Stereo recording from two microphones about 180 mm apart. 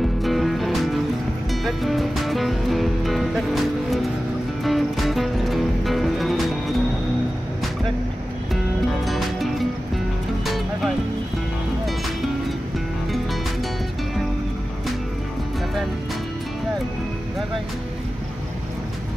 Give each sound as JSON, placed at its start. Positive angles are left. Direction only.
{"t": 0.2, "sound": "music", "side_deg": 0}
{"t": 9.0, "sound": "music", "side_deg": 0}